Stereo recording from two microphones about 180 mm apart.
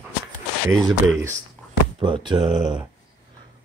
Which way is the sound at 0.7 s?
5° left (ahead or behind).